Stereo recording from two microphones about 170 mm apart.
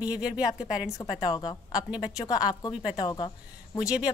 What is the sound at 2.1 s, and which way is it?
Speech, 20° left (ahead or behind).